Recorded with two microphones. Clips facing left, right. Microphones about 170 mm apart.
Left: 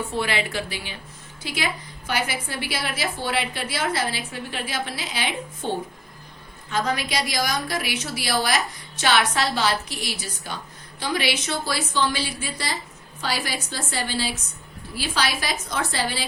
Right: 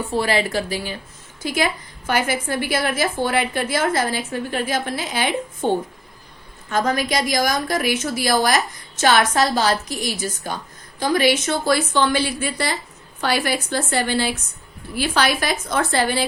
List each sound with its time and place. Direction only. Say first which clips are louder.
0.1 s a woman's voice: right 6 dB; 40° right (ahead or behind); by 16.2 s 55° right (ahead or behind)